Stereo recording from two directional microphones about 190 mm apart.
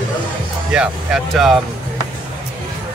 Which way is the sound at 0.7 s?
5° right (ahead or behind).